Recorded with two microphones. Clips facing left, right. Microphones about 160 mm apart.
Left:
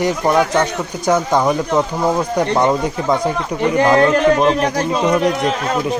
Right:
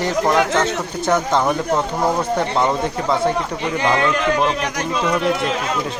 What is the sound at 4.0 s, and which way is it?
Speech, 40° left (ahead or behind).